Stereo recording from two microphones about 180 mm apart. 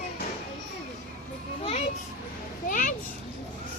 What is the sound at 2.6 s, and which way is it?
Speech, 45° left (ahead or behind).